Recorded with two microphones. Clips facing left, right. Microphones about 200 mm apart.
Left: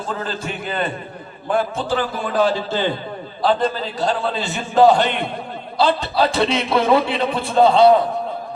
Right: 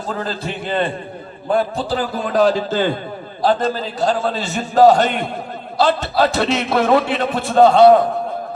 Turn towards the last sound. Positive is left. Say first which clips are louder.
# right 3 dB
turn(degrees=-45)  # may be behind; listen again after turning